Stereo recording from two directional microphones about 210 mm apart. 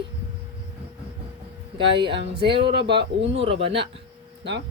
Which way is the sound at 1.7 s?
25° right (ahead or behind).